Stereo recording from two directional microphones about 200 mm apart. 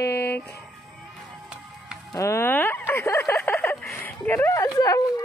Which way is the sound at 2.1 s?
15° left (ahead or behind).